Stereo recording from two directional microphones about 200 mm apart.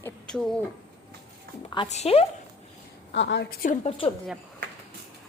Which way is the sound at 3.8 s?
30° left (ahead or behind).